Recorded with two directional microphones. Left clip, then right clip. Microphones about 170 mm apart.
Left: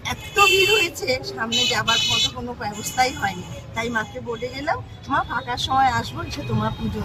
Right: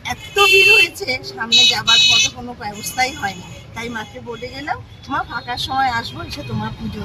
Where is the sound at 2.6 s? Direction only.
15° right (ahead or behind).